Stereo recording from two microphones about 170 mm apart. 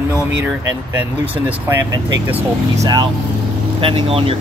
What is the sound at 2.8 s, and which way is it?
Speech, 25° right (ahead or behind).